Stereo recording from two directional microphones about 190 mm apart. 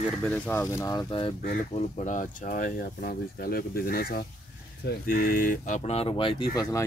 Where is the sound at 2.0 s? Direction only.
40° left (ahead or behind); by 6.8 s 20° left (ahead or behind).